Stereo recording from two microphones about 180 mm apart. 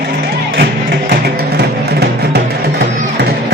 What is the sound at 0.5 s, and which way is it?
Music, 65° right (ahead or behind).